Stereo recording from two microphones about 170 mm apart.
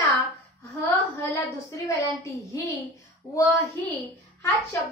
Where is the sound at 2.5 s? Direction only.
20° left (ahead or behind).